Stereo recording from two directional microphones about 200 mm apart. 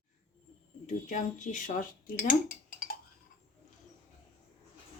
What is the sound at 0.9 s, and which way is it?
Speech, 40° left (ahead or behind).